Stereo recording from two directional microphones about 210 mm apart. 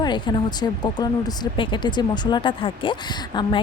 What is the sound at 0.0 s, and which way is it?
Speech, 20° left (ahead or behind).